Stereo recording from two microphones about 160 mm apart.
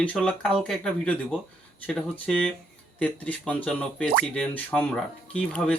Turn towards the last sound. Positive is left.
turn(degrees=5)  # may be behind; listen again after turning